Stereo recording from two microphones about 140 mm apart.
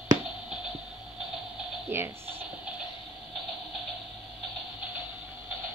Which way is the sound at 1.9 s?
15° right (ahead or behind).